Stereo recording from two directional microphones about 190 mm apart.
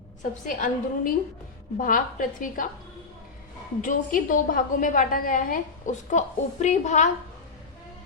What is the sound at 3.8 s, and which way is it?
A woman's voice, 45° left (ahead or behind).